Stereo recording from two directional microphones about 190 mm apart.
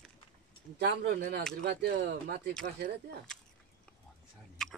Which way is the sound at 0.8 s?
60° right (ahead or behind).